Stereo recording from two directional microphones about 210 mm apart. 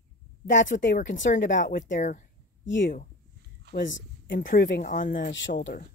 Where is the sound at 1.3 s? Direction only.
40° left (ahead or behind).